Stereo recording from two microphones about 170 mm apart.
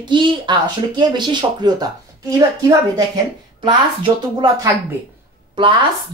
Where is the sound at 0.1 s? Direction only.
30° right (ahead or behind).